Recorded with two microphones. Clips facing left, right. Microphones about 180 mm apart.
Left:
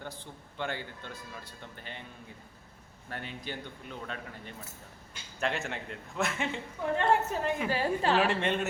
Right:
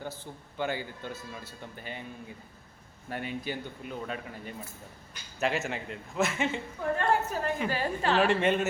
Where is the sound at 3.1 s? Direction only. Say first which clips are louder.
Right 5 dB; 10° right (ahead or behind).